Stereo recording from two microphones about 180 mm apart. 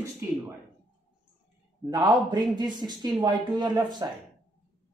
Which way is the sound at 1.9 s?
25° right (ahead or behind).